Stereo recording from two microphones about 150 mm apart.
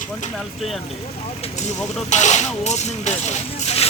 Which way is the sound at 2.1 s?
50° left (ahead or behind).